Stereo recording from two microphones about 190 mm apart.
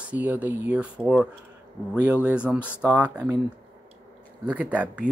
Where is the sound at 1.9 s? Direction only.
5° right (ahead or behind).